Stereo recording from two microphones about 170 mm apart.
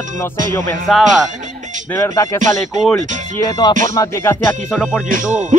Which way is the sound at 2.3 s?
50° right (ahead or behind).